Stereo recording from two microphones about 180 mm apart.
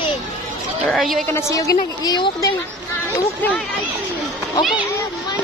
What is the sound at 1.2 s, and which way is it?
A woman's voice, 15° left (ahead or behind).